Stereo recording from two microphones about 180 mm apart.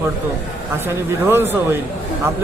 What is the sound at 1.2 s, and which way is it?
Speech, 10° right (ahead or behind).